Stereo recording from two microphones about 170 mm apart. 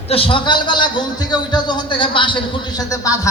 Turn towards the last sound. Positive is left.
turn(degrees=25)  # may be behind; listen again after turning